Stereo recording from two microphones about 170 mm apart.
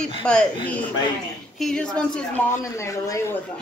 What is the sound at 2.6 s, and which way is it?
Speech, 20° left (ahead or behind).